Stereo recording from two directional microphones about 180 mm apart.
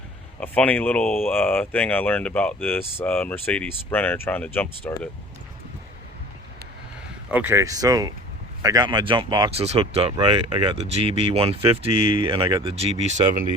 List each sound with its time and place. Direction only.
0.3 s speech: 5° left (ahead or behind)
7.3 s speech: 10° right (ahead or behind); by 13.4 s 40° right (ahead or behind)